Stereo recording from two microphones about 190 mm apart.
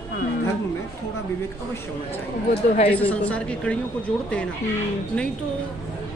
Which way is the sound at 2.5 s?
50° left (ahead or behind).